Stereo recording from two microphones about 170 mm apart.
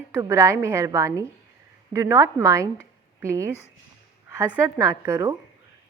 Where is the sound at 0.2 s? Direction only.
15° right (ahead or behind).